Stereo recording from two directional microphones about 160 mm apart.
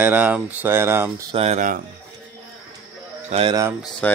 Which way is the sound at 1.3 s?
40° right (ahead or behind).